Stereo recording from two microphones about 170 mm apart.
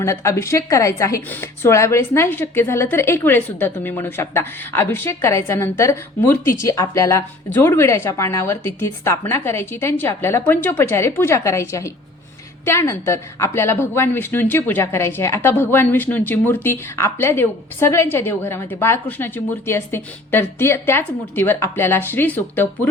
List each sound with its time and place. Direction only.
0.0 s speech: 15° left (ahead or behind)